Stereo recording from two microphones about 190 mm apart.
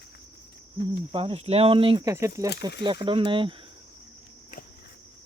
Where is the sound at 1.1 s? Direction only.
30° right (ahead or behind).